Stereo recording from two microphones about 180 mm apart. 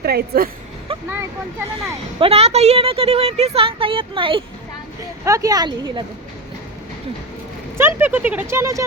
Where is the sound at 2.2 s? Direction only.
35° right (ahead or behind).